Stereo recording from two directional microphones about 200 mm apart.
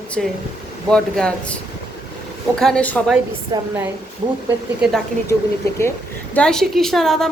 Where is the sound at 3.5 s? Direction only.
20° right (ahead or behind).